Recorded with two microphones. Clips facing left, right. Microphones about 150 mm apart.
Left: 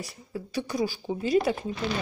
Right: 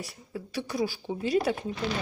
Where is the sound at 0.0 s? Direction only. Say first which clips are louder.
Left 2 dB; centre (ahead or behind).